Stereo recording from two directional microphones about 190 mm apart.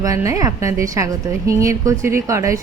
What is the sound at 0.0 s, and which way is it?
A woman's voice, 15° right (ahead or behind).